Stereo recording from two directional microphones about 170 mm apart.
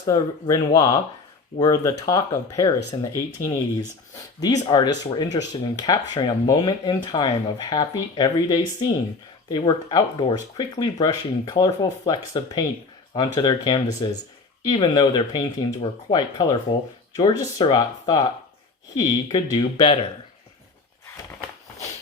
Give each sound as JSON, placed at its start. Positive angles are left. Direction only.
{"t": 0.1, "sound": "speech", "side_deg": 20}